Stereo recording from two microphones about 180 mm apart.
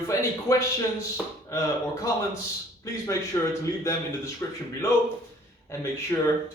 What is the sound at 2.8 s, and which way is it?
Speech, 15° left (ahead or behind).